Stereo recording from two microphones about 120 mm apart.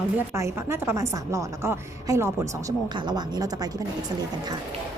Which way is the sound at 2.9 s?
35° right (ahead or behind).